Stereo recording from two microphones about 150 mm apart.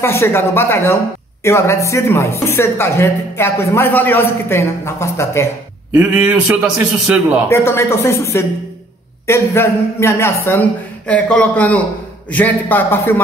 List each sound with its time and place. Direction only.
0.0 s a woman's voice: 15° left (ahead or behind)
5.9 s a man's voice: 10° right (ahead or behind)
7.4 s a woman's voice: 15° left (ahead or behind)